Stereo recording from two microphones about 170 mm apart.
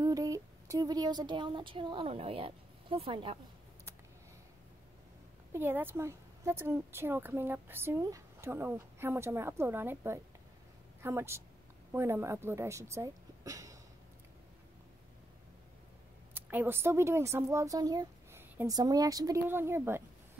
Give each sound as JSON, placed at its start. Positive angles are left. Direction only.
{"t": 0.0, "sound": "speech", "side_deg": -20}
{"t": 5.5, "sound": "a woman's voice", "side_deg": -15}
{"t": 12.9, "sound": "a sound", "side_deg": -20}
{"t": 16.3, "sound": "a woman's voice", "side_deg": -10}